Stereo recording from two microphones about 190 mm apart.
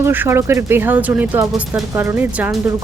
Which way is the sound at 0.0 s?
10° right (ahead or behind).